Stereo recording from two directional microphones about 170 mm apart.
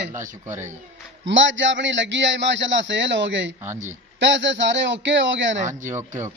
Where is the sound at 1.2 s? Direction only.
90° right.